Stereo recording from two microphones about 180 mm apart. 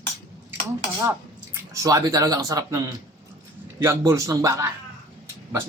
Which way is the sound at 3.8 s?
15° right (ahead or behind).